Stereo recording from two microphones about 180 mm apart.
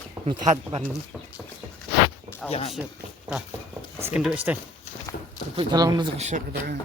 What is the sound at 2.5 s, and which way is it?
Speech, 35° left (ahead or behind).